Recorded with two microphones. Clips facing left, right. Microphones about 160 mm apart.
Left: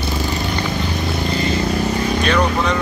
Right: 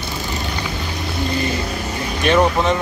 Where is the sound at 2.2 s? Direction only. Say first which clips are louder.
Right 5 dB; 20° right (ahead or behind).